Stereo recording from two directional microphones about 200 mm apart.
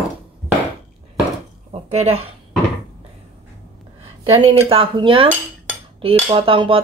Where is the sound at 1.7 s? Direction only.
30° right (ahead or behind).